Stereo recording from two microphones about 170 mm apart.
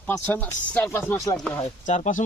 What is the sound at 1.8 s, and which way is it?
Speech, 45° left (ahead or behind).